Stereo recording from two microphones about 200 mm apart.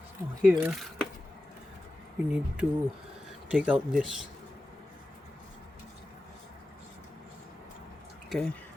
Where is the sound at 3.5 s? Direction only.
5° right (ahead or behind).